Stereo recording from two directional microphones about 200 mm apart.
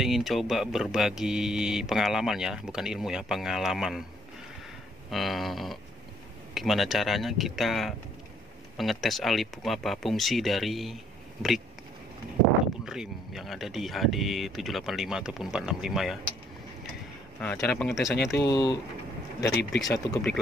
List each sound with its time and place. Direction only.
0.0 s speech: centre (ahead or behind)
5.1 s speech: centre (ahead or behind)
12.8 s speech: centre (ahead or behind)
17.4 s speech: 5° left (ahead or behind)
18.4 s speech: 20° left (ahead or behind)
19.4 s speech: 60° left (ahead or behind)